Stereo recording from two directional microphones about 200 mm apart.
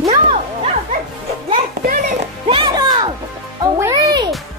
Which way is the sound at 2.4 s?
25° right (ahead or behind).